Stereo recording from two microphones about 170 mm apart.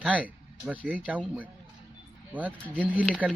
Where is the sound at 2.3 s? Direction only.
10° right (ahead or behind).